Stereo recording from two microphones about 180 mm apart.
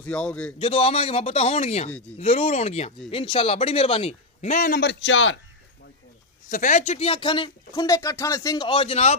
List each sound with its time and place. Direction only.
0.0 s speech: 5° left (ahead or behind)
0.6 s a man's voice: 30° left (ahead or behind)
4.7 s a man's voice: 80° left
6.5 s speech: 45° left (ahead or behind)